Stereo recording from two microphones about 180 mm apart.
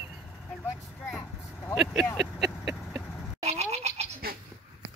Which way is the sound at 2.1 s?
Centre (ahead or behind).